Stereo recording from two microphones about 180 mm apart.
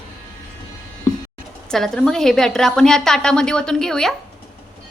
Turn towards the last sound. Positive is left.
turn(degrees=5)  # may be behind; listen again after turning